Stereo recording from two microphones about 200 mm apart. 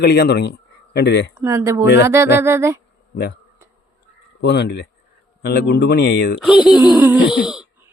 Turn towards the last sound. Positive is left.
turn(degrees=-5)  # may be behind; listen again after turning